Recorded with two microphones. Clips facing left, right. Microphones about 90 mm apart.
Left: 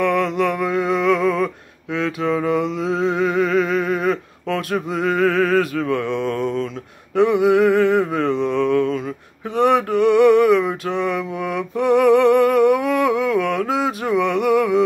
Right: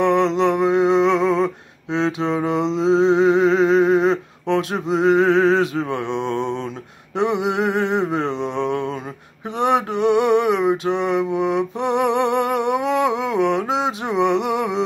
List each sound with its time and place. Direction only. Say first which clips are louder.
0.0 s music: right 2 dB; 25° right (ahead or behind)
7.2 s mantra: left 5 dB; 20° right (ahead or behind)